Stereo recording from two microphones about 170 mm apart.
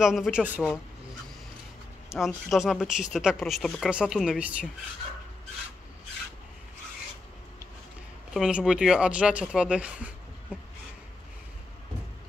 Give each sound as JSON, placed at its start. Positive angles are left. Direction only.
{"t": 0.0, "sound": "speech", "side_deg": -5}
{"t": 2.0, "sound": "speech", "side_deg": 0}
{"t": 8.3, "sound": "speech", "side_deg": -5}